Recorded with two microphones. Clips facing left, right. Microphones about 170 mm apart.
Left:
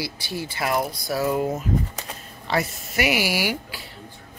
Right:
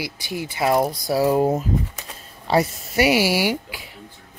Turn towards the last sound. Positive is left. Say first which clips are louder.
# right 4 dB
turn(degrees=-25)  # may be behind; listen again after turning